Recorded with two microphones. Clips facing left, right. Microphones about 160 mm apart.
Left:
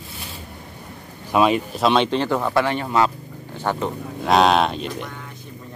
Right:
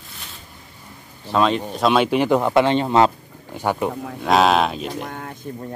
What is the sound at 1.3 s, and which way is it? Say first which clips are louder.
Speech: left 1 dB; 10° left (ahead or behind).